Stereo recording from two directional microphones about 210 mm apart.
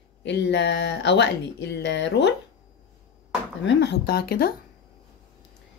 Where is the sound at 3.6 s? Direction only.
55° left (ahead or behind).